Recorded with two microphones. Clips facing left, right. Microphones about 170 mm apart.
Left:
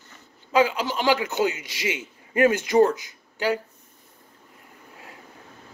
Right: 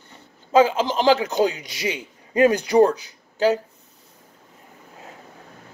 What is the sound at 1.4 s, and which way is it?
Speech, 35° right (ahead or behind).